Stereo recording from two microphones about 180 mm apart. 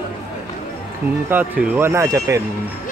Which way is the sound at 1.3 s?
10° right (ahead or behind).